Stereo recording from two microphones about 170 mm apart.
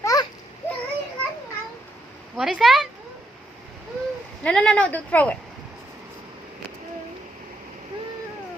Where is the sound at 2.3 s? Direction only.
Centre (ahead or behind).